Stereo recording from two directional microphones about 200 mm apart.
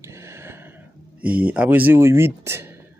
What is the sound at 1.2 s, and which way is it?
Speech, 5° right (ahead or behind).